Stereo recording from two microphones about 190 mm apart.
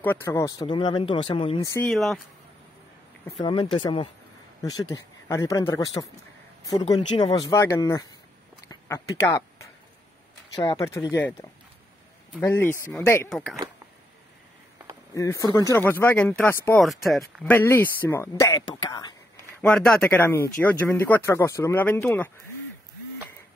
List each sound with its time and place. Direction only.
0.0 s speech: 10° left (ahead or behind); by 1.6 s 30° left (ahead or behind)
1.6 s speech: 15° left (ahead or behind)
1.9 s speech: centre (ahead or behind)
3.3 s speech: 25° left (ahead or behind)
5.3 s speech: 15° left (ahead or behind)
8.6 s a sound: 15° left (ahead or behind)
10.5 s speech: 20° left (ahead or behind)
12.4 s speech: 10° left (ahead or behind)
15.1 s speech: 15° left (ahead or behind)
16.8 s speech: centre (ahead or behind); by 19.1 s 20° left (ahead or behind)
19.6 s speech: 5° left (ahead or behind)